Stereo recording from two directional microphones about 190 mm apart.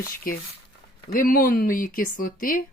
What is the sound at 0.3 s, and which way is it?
Speech, 50° left (ahead or behind).